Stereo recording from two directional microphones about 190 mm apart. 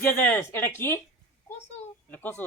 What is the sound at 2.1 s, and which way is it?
Speech, 10° left (ahead or behind).